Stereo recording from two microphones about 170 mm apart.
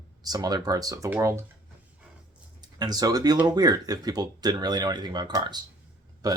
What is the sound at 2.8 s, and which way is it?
A man's voice, 25° right (ahead or behind).